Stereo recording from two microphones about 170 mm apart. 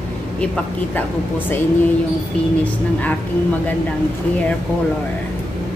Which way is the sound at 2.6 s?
10° left (ahead or behind).